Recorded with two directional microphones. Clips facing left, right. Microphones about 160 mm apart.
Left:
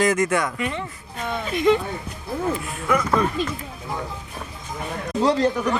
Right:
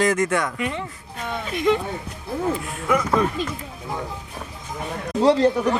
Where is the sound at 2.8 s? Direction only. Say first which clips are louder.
Even; 15° right (ahead or behind).